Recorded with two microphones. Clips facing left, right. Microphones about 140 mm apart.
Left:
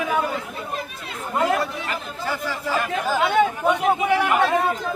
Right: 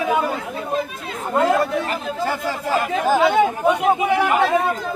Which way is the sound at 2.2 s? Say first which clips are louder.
Right 2 dB; 50° right (ahead or behind).